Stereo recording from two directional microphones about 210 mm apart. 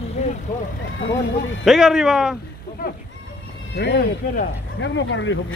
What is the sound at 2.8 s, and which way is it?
Speech, 40° left (ahead or behind).